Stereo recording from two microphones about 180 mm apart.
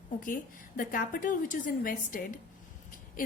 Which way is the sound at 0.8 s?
50° left (ahead or behind).